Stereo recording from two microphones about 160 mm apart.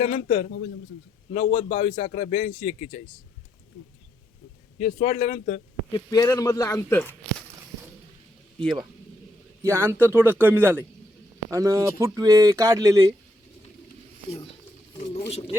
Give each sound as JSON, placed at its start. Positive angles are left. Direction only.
{"t": 0.0, "sound": "a man's voice", "side_deg": 45}
{"t": 4.8, "sound": "a man's voice", "side_deg": 50}
{"t": 5.9, "sound": "a man's voice", "side_deg": 20}
{"t": 9.7, "sound": "speech", "side_deg": -15}
{"t": 15.3, "sound": "speech", "side_deg": 35}